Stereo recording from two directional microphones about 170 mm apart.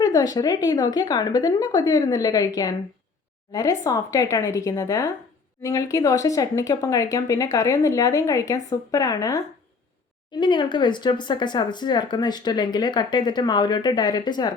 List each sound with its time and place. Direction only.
0.0 s speech: 20° left (ahead or behind)
10.4 s speech: 25° left (ahead or behind)